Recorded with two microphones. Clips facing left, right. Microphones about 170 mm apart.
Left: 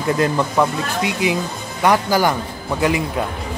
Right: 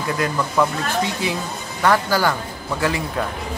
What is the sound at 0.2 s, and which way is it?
Speech, 15° left (ahead or behind).